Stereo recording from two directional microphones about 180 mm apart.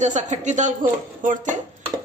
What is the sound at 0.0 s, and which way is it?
Speech, 40° right (ahead or behind).